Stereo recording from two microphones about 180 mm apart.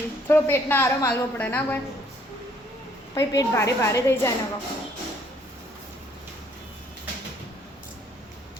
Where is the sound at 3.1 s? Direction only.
20° left (ahead or behind).